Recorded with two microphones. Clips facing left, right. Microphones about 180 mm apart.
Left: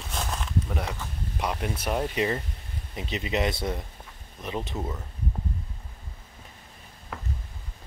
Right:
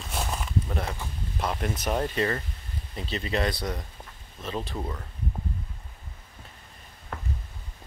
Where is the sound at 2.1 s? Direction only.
15° left (ahead or behind).